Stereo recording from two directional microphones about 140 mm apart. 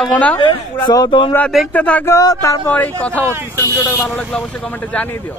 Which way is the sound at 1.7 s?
10° left (ahead or behind).